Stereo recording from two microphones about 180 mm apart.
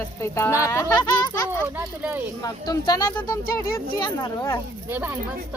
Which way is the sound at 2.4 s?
20° left (ahead or behind).